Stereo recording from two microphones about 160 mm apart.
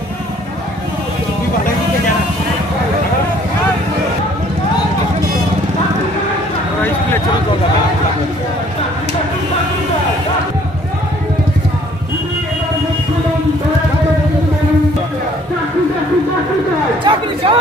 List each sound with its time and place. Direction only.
17.0 s chatter: 35° right (ahead or behind)